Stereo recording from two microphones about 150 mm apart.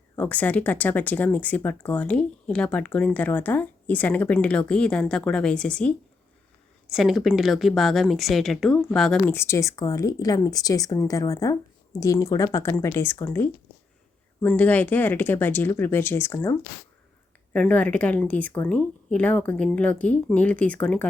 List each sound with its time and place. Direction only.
0.2 s speech: 10° left (ahead or behind)
6.9 s speech: centre (ahead or behind)
9.3 s speech: 20° left (ahead or behind)